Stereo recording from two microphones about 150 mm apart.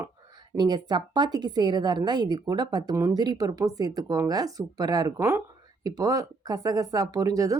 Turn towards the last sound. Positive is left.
turn(degrees=-25)  # may be behind; listen again after turning